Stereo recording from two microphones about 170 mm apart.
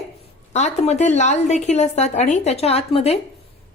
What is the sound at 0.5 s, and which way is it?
Speech, 40° left (ahead or behind).